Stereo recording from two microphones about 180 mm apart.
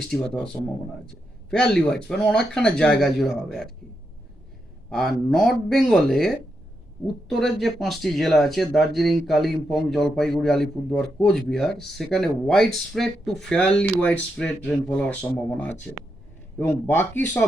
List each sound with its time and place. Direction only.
0.1 s speech: 5° left (ahead or behind)
4.9 s speech: centre (ahead or behind)